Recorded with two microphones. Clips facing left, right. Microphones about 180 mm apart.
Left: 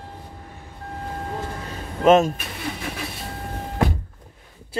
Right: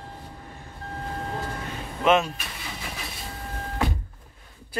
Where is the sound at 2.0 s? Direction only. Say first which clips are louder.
Left 6 dB; 40° left (ahead or behind).